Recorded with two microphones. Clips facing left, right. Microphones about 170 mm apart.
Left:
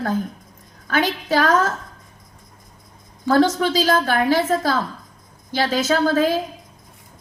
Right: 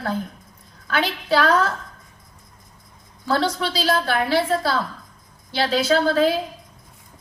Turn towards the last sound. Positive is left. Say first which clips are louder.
# even
turn(degrees=45)  # may be behind; listen again after turning